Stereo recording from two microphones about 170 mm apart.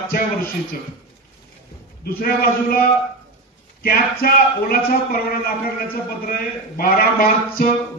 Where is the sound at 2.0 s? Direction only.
60° left (ahead or behind).